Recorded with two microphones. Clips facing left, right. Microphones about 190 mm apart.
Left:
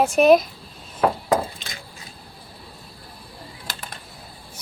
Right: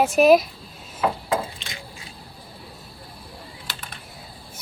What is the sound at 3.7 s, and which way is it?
Typing, 40° left (ahead or behind).